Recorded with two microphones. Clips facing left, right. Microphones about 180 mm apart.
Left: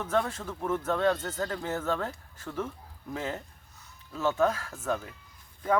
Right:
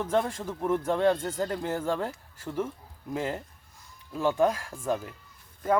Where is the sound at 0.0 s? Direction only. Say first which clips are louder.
Right 2 dB; 15° right (ahead or behind).